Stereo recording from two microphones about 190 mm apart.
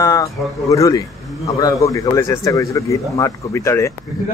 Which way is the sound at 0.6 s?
15° left (ahead or behind).